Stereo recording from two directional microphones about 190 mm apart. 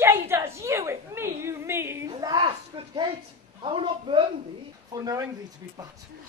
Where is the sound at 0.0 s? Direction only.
15° right (ahead or behind).